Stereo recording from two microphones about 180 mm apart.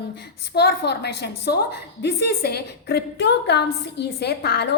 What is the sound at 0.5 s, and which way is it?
A woman's voice, 70° left (ahead or behind).